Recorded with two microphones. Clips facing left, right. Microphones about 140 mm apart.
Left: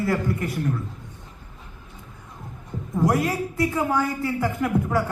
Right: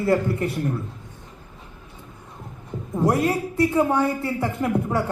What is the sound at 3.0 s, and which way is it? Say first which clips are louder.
A woman's voice: right 2 dB; 30° right (ahead or behind).